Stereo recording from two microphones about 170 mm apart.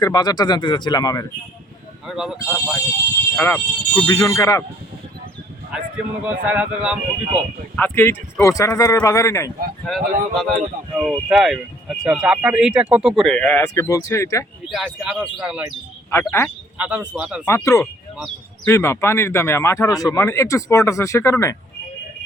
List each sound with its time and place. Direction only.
0.0 s speech: 25° left (ahead or behind)
2.0 s speech: centre (ahead or behind)
3.3 s speech: 10° left (ahead or behind)
5.7 s speech: 5° right (ahead or behind)
7.8 s speech: 10° left (ahead or behind)
9.8 s speech: centre (ahead or behind); by 14.4 s 15° left (ahead or behind)
14.7 s speech: centre (ahead or behind)
16.1 s speech: 15° left (ahead or behind)
16.7 s speech: 10° right (ahead or behind)
17.4 s speech: 15° left (ahead or behind)